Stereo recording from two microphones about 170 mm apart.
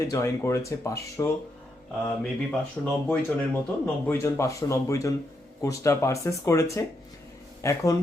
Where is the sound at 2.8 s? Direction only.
10° left (ahead or behind).